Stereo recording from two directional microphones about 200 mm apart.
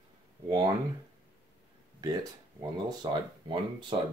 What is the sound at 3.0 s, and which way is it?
Speech, 25° right (ahead or behind).